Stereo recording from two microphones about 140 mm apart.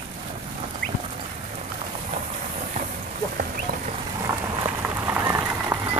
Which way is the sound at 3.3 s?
90° right.